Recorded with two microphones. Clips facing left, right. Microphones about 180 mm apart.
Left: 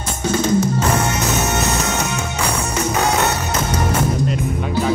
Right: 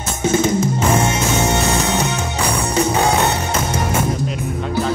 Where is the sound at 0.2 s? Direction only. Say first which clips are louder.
Right 1 dB; 25° right (ahead or behind).